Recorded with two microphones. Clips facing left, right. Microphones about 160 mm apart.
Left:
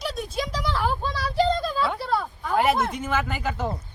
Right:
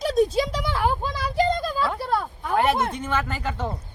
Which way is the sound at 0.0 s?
45° right (ahead or behind).